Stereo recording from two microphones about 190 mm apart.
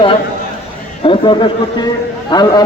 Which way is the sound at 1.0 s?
25° left (ahead or behind).